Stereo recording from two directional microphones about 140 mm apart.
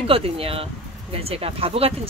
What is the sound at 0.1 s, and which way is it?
Speech, 45° right (ahead or behind).